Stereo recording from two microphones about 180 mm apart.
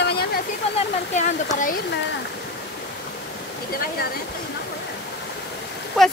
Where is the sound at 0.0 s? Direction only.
60° left (ahead or behind).